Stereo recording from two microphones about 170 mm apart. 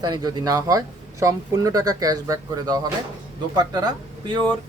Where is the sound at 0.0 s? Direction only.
25° right (ahead or behind).